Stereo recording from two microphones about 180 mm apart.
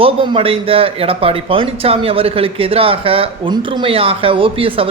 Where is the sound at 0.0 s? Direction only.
30° right (ahead or behind).